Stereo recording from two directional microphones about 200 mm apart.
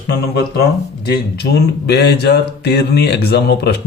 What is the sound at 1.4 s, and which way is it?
Speech, 55° left (ahead or behind).